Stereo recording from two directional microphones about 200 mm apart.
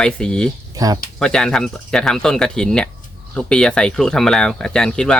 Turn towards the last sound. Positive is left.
turn(degrees=5)  # may be behind; listen again after turning